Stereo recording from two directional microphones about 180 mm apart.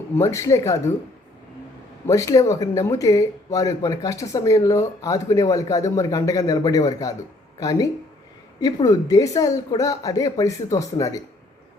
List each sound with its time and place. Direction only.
0.2 s speech: 15° left (ahead or behind)
2.0 s speech: 20° left (ahead or behind)